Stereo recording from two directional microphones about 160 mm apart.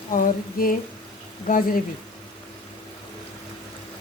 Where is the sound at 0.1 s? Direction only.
60° left (ahead or behind).